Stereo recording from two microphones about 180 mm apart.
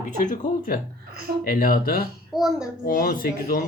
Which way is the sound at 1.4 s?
55° left (ahead or behind).